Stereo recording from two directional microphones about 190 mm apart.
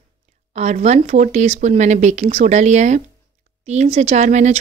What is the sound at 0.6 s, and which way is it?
Speech, 35° right (ahead or behind).